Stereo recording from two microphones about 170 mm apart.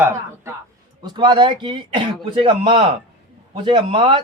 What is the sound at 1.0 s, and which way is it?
A man's voice, 25° right (ahead or behind).